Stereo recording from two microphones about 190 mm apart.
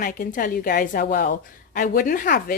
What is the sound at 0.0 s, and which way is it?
A woman's voice, 45° left (ahead or behind).